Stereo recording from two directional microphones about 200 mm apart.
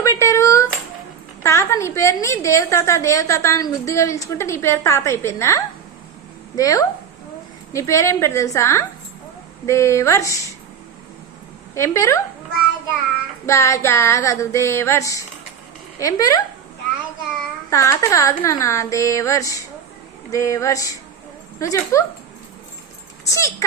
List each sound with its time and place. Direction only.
0.0 s a sound: 15° left (ahead or behind)
1.5 s a woman's voice: 15° left (ahead or behind)
11.7 s a woman's voice: 15° left (ahead or behind)
13.4 s a woman's voice: 15° left (ahead or behind)
17.7 s a woman's voice: 15° left (ahead or behind)
23.3 s a woman's voice: 15° left (ahead or behind)